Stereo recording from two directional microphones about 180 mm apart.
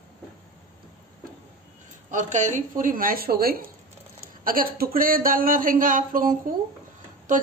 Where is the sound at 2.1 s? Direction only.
45° right (ahead or behind).